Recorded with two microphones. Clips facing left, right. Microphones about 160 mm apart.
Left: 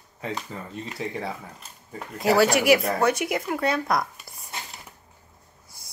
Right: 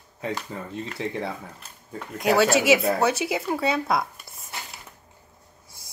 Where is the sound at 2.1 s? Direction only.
Centre (ahead or behind).